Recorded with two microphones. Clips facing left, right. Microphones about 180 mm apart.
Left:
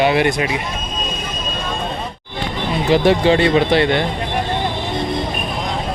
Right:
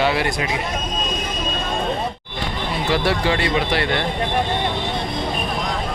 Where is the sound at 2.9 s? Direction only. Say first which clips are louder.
Left 7 dB; 20° left (ahead or behind).